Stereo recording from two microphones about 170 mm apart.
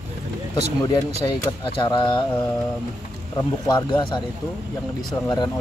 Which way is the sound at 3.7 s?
30° left (ahead or behind).